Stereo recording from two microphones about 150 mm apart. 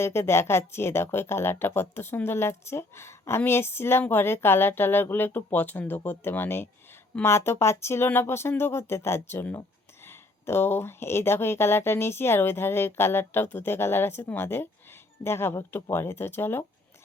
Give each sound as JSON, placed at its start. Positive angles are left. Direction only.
{"t": 0.0, "sound": "speech", "side_deg": 15}